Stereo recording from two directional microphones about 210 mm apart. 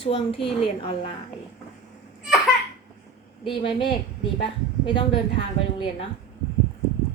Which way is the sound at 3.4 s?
25° left (ahead or behind).